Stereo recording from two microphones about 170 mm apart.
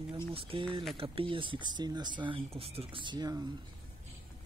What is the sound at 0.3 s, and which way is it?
Speech, 30° right (ahead or behind).